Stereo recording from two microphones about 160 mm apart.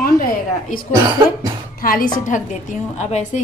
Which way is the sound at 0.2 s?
60° left (ahead or behind).